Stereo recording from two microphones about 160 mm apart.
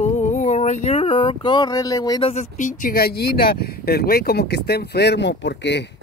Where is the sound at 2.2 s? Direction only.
45° left (ahead or behind).